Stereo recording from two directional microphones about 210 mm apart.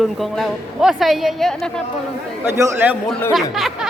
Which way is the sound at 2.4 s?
15° right (ahead or behind).